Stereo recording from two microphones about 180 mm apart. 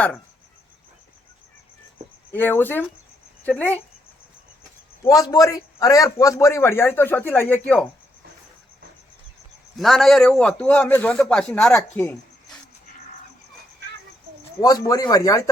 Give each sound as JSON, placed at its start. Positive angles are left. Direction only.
{"t": 2.3, "sound": "a man's voice", "side_deg": 10}
{"t": 5.0, "sound": "a man's voice", "side_deg": 20}
{"t": 9.7, "sound": "a man's voice", "side_deg": 0}
{"t": 14.6, "sound": "speech", "side_deg": 20}